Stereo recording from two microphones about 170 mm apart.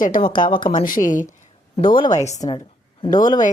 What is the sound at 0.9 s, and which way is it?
Speech, 50° left (ahead or behind).